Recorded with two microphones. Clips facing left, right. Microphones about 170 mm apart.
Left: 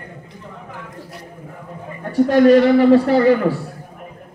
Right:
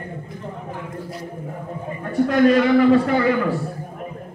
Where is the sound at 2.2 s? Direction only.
35° left (ahead or behind).